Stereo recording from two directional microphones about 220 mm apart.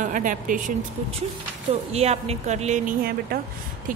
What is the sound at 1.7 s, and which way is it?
A woman's voice, 30° right (ahead or behind).